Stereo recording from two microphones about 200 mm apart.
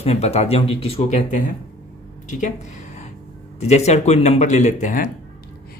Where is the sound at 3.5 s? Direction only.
35° left (ahead or behind).